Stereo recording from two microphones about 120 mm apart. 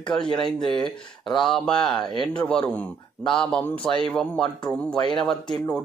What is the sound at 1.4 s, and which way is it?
A man's voice, 5° left (ahead or behind).